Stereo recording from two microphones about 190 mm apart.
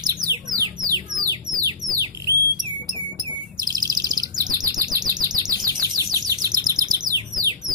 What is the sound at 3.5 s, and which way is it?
Chirp, 20° right (ahead or behind).